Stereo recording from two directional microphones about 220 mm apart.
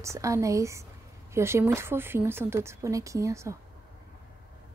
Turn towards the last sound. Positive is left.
turn(degrees=-15)  # may be behind; listen again after turning